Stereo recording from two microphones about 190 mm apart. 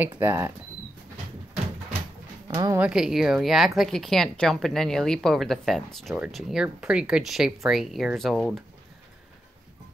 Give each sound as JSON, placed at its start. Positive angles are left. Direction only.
{"t": 0.2, "sound": "speech", "side_deg": -15}
{"t": 2.4, "sound": "a woman's voice", "side_deg": -20}
{"t": 2.8, "sound": "speech", "side_deg": -5}